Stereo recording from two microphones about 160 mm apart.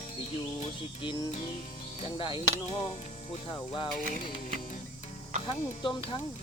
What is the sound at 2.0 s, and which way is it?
Music, 30° left (ahead or behind).